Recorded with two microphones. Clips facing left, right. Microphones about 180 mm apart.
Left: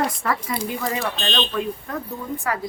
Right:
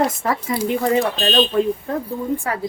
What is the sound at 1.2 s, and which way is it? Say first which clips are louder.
Speech: right 7 dB; 40° right (ahead or behind).